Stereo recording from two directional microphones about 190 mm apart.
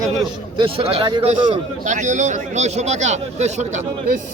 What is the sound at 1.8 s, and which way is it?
Speech, 40° right (ahead or behind).